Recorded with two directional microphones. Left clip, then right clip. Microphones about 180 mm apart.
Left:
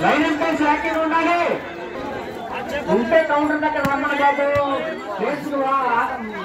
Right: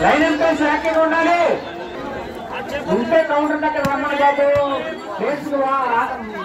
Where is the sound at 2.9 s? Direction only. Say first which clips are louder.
Even; 50° left (ahead or behind).